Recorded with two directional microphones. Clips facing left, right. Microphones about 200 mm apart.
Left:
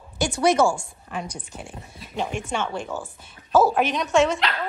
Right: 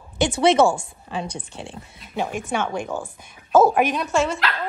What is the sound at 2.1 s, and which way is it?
A woman's voice, 10° right (ahead or behind).